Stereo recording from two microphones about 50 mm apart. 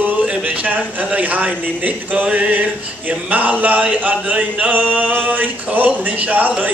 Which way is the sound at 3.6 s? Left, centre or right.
Right.